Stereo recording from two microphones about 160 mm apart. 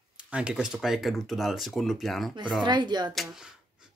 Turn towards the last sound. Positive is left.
turn(degrees=-5)  # may be behind; listen again after turning